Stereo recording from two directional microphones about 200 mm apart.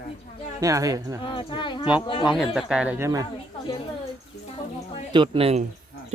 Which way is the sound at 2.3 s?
Centre (ahead or behind).